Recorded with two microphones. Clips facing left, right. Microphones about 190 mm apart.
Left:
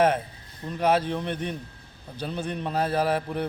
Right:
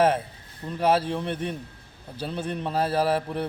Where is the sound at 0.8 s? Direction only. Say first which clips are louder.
Even; 5° right (ahead or behind).